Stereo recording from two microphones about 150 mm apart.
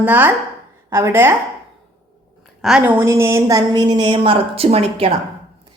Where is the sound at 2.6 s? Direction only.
5° right (ahead or behind).